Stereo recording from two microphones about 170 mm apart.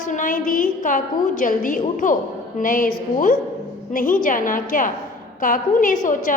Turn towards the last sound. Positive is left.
turn(degrees=50)  # may be behind; listen again after turning